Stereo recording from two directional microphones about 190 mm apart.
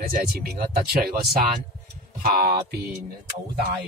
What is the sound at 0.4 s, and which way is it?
Speech, 50° right (ahead or behind).